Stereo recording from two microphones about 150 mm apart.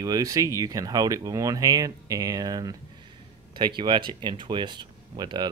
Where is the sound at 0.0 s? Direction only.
25° right (ahead or behind).